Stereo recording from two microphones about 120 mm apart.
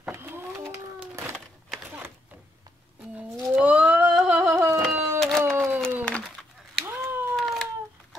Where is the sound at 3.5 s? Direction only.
10° right (ahead or behind).